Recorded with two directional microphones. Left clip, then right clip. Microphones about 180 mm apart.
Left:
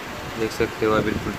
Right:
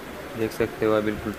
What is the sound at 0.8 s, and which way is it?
Speech, 20° right (ahead or behind).